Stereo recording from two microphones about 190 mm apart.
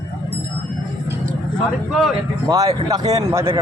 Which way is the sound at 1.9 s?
Centre (ahead or behind).